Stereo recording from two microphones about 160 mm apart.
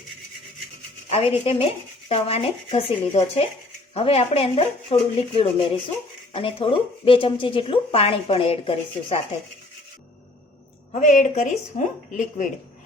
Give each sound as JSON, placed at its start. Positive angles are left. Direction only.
{"t": 1.5, "sound": "speech", "side_deg": 40}
{"t": 10.9, "sound": "a woman's voice", "side_deg": 50}